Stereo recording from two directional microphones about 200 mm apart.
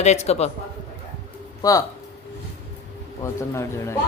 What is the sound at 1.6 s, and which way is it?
Speech, 15° left (ahead or behind).